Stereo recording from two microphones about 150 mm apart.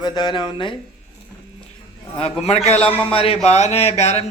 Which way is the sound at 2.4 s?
45° left (ahead or behind).